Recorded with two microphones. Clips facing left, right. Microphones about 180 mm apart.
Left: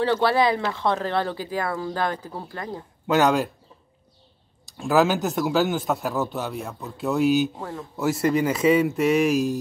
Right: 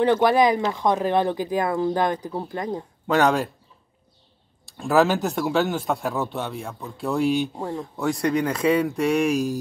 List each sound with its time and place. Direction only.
0.0 s speech: 15° right (ahead or behind)
3.1 s a man's voice: centre (ahead or behind)
4.6 s a man's voice: centre (ahead or behind)
7.5 s speech: 15° right (ahead or behind)
8.0 s a man's voice: 5° left (ahead or behind)